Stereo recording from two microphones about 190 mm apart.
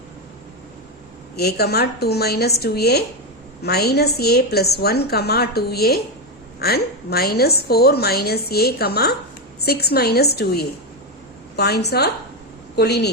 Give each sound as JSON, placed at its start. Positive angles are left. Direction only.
{"t": 1.4, "sound": "a woman's voice", "side_deg": 55}